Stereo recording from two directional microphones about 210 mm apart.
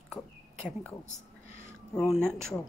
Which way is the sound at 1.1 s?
30° left (ahead or behind).